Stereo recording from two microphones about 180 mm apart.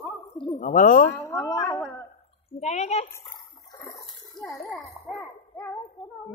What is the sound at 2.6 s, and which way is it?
Speech, 40° left (ahead or behind).